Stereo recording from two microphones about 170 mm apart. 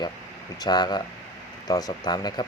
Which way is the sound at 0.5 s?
25° left (ahead or behind).